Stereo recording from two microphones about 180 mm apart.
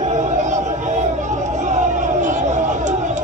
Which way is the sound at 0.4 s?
40° right (ahead or behind).